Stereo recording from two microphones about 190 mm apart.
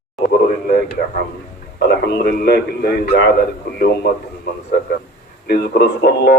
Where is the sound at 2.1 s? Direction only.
55° left (ahead or behind).